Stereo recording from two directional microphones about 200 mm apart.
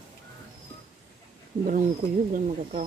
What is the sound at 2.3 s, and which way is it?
Speech, 40° right (ahead or behind).